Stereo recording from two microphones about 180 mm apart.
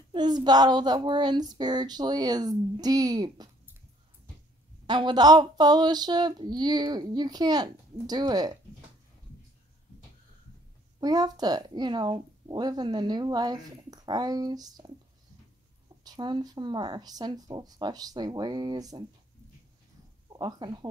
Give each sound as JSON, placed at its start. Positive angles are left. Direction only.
{"t": 0.1, "sound": "speech", "side_deg": -25}
{"t": 4.8, "sound": "speech", "side_deg": -25}
{"t": 11.0, "sound": "speech", "side_deg": -20}
{"t": 16.0, "sound": "speech", "side_deg": -25}
{"t": 20.2, "sound": "speech", "side_deg": -25}